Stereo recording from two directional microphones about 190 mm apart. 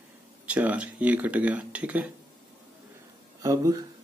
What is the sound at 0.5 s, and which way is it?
Speech, 5° right (ahead or behind).